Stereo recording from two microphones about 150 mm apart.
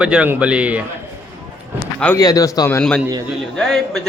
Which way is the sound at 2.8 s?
5° left (ahead or behind).